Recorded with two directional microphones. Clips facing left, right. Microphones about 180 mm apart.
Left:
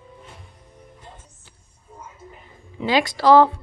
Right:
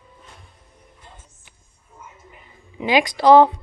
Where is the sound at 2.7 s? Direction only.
15° right (ahead or behind).